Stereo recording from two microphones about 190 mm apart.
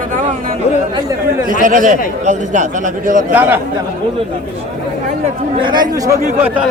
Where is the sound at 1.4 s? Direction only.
45° right (ahead or behind).